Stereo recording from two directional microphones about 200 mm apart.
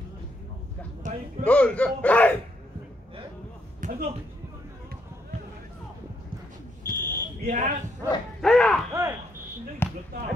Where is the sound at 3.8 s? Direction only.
40° right (ahead or behind).